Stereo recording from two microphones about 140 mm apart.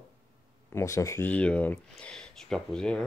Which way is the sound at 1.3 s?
10° left (ahead or behind).